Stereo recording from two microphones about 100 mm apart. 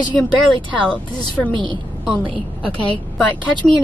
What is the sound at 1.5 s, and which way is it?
Speech, 55° right (ahead or behind).